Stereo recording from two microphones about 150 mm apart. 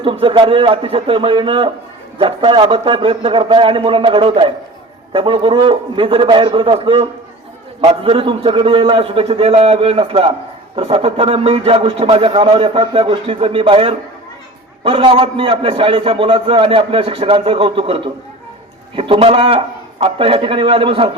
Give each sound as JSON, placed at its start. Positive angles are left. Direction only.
{"t": 0.0, "sound": "a man's voice", "side_deg": -35}